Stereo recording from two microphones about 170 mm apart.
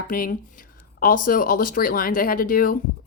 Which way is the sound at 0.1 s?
55° left (ahead or behind).